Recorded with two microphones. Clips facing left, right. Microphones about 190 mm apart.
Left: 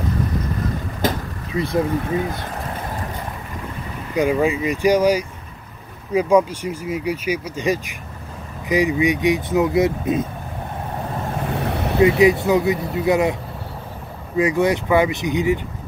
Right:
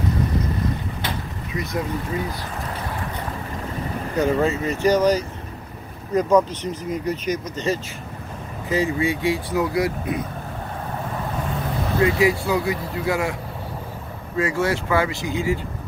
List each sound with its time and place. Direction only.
1.0 s a sound: 45° left (ahead or behind)
1.5 s speech: 30° left (ahead or behind)
4.1 s speech: 15° left (ahead or behind)
11.5 s vehicle: 70° left (ahead or behind)
12.0 s speech: 20° left (ahead or behind)